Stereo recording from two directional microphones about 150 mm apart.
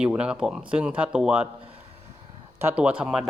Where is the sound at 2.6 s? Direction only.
10° right (ahead or behind).